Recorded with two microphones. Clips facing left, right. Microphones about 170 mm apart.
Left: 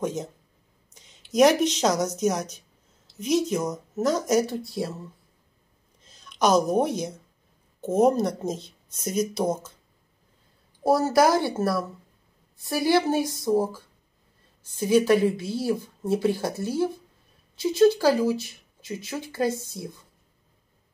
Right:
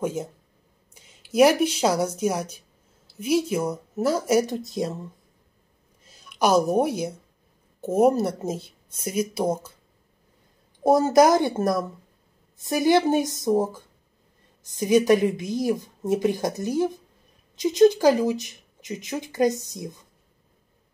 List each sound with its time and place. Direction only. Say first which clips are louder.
0.0 s a woman's voice: right 1 dB; 10° right (ahead or behind)
6.0 s a woman's voice: even; 5° right (ahead or behind)
10.8 s a woman's voice: right 3 dB; 20° right (ahead or behind)